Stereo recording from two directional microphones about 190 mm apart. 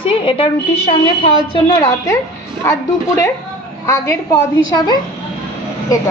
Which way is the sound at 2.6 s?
15° left (ahead or behind).